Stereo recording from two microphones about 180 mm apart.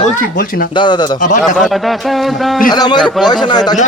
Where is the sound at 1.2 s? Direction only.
45° left (ahead or behind).